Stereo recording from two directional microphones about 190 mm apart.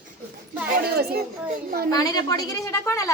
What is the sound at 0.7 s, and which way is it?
Speech, 55° right (ahead or behind).